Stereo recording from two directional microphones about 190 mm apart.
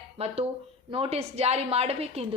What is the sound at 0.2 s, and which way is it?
A woman's voice, 30° right (ahead or behind).